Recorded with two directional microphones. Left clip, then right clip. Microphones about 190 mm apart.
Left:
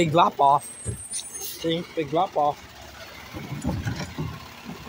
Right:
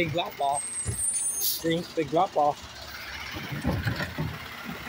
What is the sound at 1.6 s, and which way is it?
Speech, 5° left (ahead or behind).